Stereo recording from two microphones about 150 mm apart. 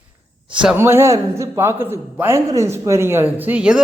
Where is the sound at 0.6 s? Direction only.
15° right (ahead or behind).